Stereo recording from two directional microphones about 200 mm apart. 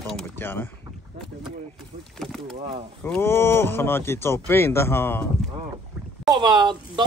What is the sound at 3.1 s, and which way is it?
Speech, 10° left (ahead or behind).